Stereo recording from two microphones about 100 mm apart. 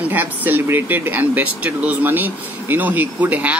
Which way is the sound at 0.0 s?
20° right (ahead or behind).